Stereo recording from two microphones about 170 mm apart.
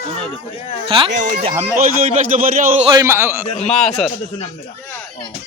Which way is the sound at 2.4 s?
55° right (ahead or behind).